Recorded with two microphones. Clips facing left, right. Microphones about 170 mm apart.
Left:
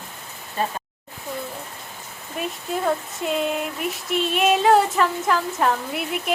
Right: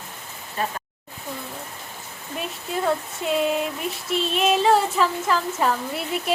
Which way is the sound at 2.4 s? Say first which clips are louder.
Left 1 dB; centre (ahead or behind).